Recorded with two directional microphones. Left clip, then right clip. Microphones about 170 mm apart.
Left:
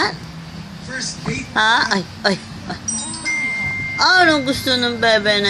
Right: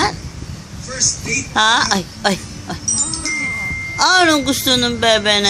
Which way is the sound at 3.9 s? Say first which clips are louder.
Right 1 dB; 30° right (ahead or behind).